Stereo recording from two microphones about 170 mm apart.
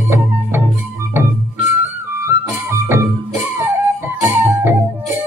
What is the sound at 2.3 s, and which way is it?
Music, 20° right (ahead or behind).